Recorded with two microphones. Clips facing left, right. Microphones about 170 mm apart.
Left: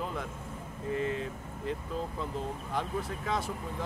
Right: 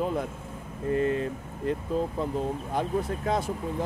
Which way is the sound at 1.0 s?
50° right (ahead or behind).